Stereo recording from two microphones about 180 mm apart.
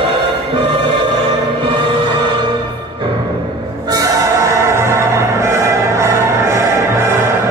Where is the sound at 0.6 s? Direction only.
30° right (ahead or behind).